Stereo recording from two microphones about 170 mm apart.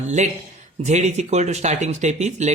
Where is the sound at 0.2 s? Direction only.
45° right (ahead or behind).